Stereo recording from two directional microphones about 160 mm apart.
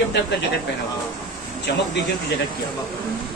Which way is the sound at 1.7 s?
90° left.